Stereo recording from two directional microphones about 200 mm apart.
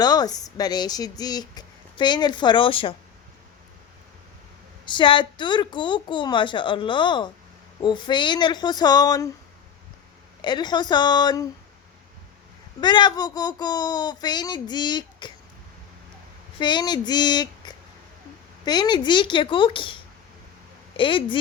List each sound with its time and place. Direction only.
0.0 s a woman's voice: 20° left (ahead or behind)
4.9 s a woman's voice: 25° left (ahead or behind)
10.4 s a woman's voice: 20° left (ahead or behind)
12.8 s a woman's voice: 20° left (ahead or behind)
16.6 s a woman's voice: 20° left (ahead or behind)